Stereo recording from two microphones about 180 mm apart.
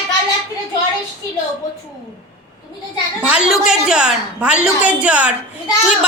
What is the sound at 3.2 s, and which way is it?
A woman's voice, 5° right (ahead or behind).